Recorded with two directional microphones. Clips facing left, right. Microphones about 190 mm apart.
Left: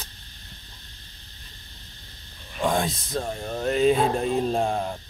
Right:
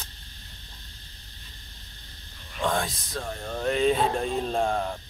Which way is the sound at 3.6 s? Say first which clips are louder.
Left 3 dB; 5° left (ahead or behind).